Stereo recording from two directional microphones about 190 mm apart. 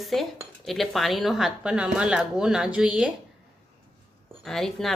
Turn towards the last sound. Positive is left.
turn(degrees=0)  # may be behind; listen again after turning